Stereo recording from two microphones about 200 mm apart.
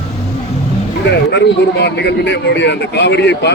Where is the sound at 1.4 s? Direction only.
55° left (ahead or behind).